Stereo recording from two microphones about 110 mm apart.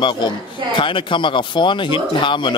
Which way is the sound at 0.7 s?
50° left (ahead or behind).